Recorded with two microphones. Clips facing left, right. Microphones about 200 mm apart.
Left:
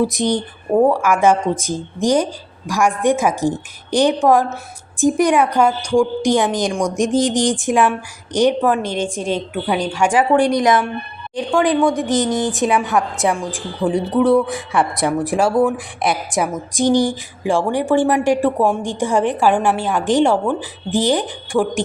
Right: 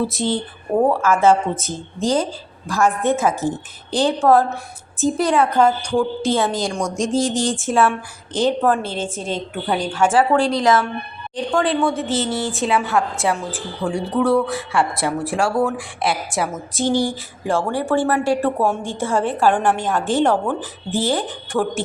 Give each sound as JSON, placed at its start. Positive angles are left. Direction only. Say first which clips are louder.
{"t": 0.0, "sound": "speech", "louder": "left 3 dB", "side_deg": 15}